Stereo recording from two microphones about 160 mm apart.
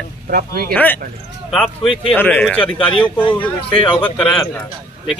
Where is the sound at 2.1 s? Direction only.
10° left (ahead or behind).